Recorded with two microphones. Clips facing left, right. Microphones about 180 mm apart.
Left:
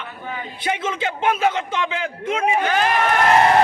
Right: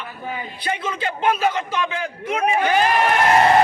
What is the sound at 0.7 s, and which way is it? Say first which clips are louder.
A man's voice: left 2 dB; 20° left (ahead or behind).